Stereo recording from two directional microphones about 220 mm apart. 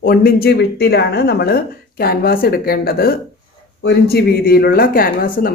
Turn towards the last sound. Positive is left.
turn(degrees=40)  # may be behind; listen again after turning